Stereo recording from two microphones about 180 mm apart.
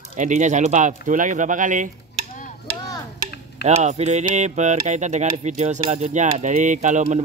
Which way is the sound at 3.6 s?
40° right (ahead or behind).